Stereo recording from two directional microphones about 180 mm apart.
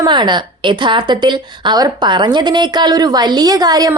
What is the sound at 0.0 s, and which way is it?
A woman's voice, 25° right (ahead or behind).